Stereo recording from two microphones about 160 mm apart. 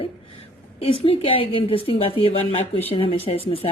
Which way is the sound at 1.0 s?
35° left (ahead or behind).